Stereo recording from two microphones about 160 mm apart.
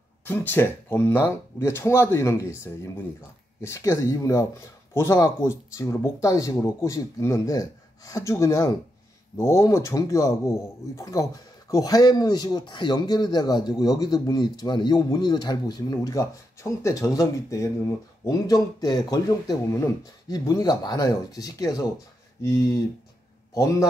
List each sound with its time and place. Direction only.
0.2 s speech: 10° left (ahead or behind)